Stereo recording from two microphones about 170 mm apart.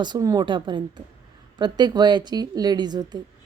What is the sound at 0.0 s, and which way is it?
A woman's voice, 25° right (ahead or behind).